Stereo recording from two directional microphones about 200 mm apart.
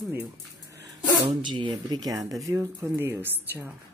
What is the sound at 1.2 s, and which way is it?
Speech, 25° right (ahead or behind).